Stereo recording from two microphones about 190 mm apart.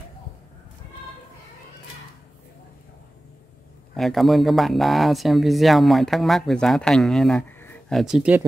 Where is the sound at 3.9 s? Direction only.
Centre (ahead or behind).